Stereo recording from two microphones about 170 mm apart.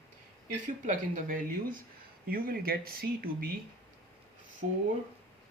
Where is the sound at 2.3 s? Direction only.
60° right (ahead or behind).